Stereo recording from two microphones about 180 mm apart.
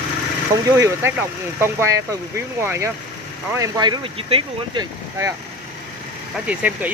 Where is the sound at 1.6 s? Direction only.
15° right (ahead or behind); by 4.9 s 30° right (ahead or behind).